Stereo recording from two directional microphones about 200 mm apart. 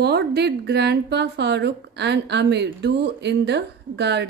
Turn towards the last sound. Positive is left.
turn(degrees=-60)  # may be behind; listen again after turning